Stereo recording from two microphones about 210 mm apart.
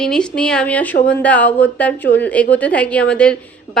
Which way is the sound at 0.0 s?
5° left (ahead or behind).